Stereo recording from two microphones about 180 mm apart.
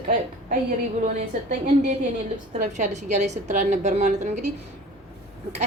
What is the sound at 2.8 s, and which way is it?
A woman's voice, 40° right (ahead or behind).